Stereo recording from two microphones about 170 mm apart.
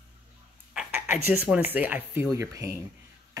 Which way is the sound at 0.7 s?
5° right (ahead or behind).